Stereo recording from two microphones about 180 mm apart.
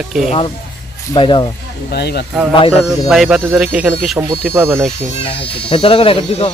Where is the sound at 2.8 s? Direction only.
Centre (ahead or behind).